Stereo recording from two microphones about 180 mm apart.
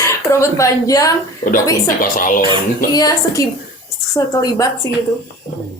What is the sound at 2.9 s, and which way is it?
A woman's voice, 20° left (ahead or behind).